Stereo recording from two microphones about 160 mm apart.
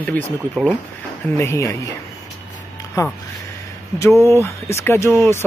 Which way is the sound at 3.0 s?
20° left (ahead or behind).